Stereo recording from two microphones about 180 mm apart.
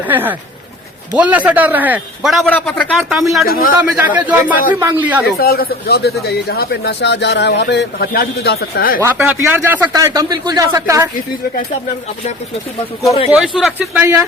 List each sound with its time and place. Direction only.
0.1 s a man's voice: 10° right (ahead or behind)
5.2 s speech: 55° left (ahead or behind)
9.0 s speech: 10° right (ahead or behind)
13.6 s speech: 5° right (ahead or behind)